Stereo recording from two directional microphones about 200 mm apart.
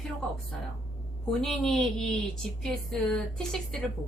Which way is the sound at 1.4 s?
5° left (ahead or behind).